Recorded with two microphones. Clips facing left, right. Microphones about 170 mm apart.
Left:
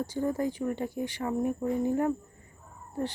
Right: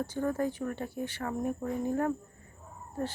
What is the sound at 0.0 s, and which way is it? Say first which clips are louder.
Speech: left 1 dB; 15° left (ahead or behind).